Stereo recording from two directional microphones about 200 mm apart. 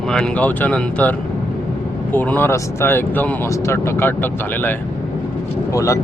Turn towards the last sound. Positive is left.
turn(degrees=15)  # may be behind; listen again after turning